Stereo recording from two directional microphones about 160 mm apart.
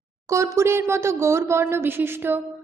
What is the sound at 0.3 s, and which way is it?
A woman's voice, 20° right (ahead or behind).